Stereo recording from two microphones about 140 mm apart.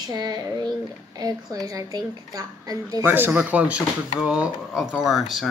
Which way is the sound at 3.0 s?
15° right (ahead or behind).